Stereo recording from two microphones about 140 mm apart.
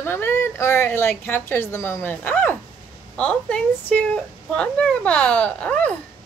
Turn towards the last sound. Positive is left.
turn(degrees=10)  # may be behind; listen again after turning